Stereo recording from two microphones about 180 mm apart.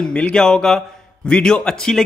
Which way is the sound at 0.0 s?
5° left (ahead or behind).